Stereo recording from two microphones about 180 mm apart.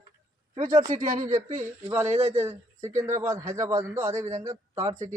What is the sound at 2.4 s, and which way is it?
Speech, 15° right (ahead or behind).